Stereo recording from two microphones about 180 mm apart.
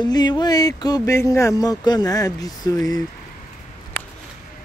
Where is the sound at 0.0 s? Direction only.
25° left (ahead or behind).